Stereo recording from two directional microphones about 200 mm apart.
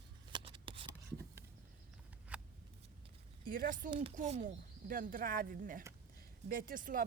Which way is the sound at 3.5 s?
45° right (ahead or behind).